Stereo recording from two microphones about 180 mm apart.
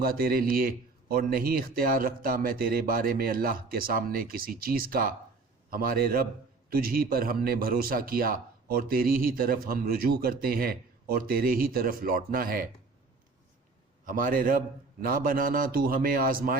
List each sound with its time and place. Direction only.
0.0 s a man's voice: 55° right (ahead or behind)
14.0 s a man's voice: 50° right (ahead or behind)